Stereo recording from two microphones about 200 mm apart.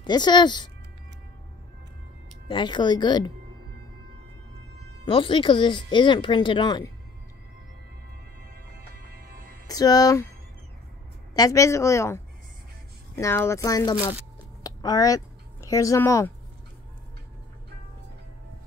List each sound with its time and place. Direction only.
0.0 s speech: 20° left (ahead or behind)
2.4 s speech: 25° left (ahead or behind)
5.0 s speech: 25° left (ahead or behind)
8.7 s music: 45° right (ahead or behind)
9.7 s speech: 20° left (ahead or behind)
11.3 s a woman's voice: 15° left (ahead or behind)
14.6 s a sound: 20° left (ahead or behind)